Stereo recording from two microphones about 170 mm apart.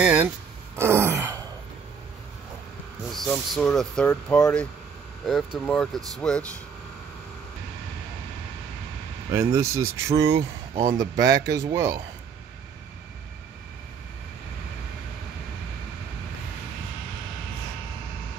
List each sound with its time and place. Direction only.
0.0 s a sound: 5° right (ahead or behind)
0.7 s wail: 15° right (ahead or behind)
3.1 s speech: centre (ahead or behind)
9.3 s speech: 15° right (ahead or behind)
10.7 s speech: 35° right (ahead or behind)
11.0 s speech: 20° right (ahead or behind)